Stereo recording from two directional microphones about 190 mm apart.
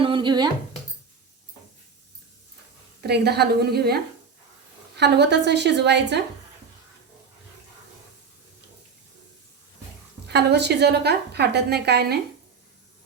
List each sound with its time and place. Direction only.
0.0 s a sound: 25° right (ahead or behind)
3.0 s a woman's voice: 60° right (ahead or behind)
10.2 s a woman's voice: 60° right (ahead or behind)